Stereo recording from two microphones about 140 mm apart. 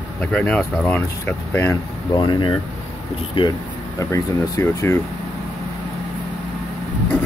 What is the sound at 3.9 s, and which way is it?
Speech, 25° left (ahead or behind).